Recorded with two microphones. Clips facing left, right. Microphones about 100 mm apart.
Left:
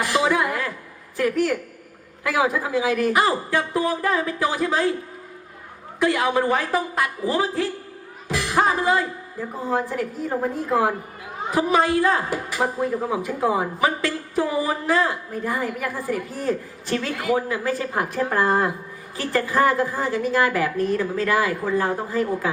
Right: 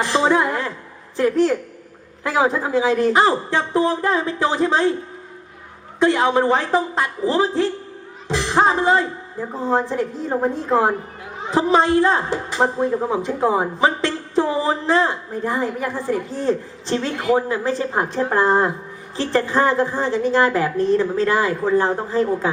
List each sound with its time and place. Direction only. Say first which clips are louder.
0.0 s a sound: right 3 dB; 30° right (ahead or behind)
1.1 s a woman's voice: right 4 dB; 30° right (ahead or behind)
6.0 s a woman's voice: right 4 dB; 25° right (ahead or behind)